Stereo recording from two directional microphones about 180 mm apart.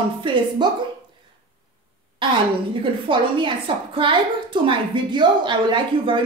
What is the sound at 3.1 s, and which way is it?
A woman's voice, 30° right (ahead or behind).